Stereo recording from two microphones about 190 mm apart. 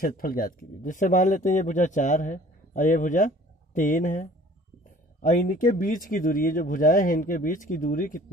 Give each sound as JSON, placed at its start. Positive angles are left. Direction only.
{"t": 0.0, "sound": "speech", "side_deg": 45}